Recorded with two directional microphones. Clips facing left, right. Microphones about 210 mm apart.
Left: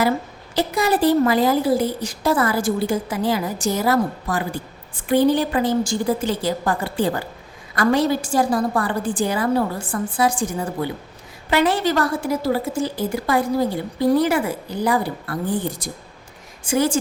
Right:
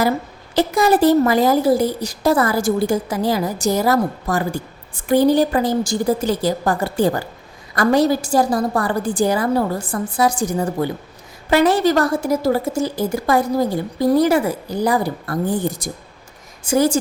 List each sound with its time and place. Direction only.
0.5 s a woman's voice: 45° right (ahead or behind)